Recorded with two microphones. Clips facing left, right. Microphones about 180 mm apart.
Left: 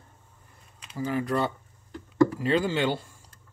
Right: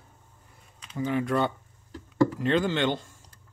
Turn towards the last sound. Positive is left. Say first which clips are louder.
# even
turn(degrees=10)  # may be behind; listen again after turning